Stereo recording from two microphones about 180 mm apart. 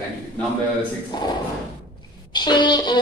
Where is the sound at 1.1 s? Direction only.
25° left (ahead or behind).